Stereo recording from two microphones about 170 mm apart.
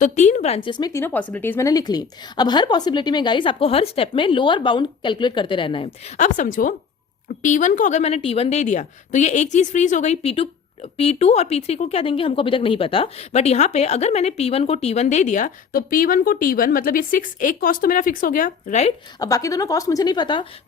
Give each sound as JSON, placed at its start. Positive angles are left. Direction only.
{"t": 0.0, "sound": "speech", "side_deg": 45}
{"t": 1.0, "sound": "a woman's voice", "side_deg": 10}
{"t": 6.1, "sound": "a woman's voice", "side_deg": 45}
{"t": 19.2, "sound": "a woman's voice", "side_deg": 20}